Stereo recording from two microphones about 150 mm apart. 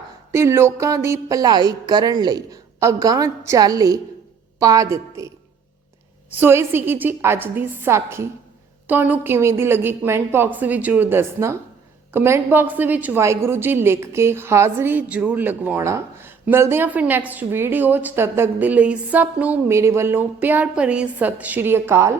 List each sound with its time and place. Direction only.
0.3 s speech: 15° right (ahead or behind)
6.3 s a woman's voice: 15° right (ahead or behind)